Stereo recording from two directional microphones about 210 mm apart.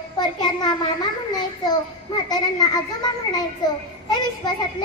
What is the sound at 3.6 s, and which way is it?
Speech, 20° left (ahead or behind).